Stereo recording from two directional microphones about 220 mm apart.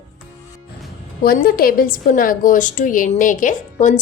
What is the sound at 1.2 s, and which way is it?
A woman's voice, 40° left (ahead or behind).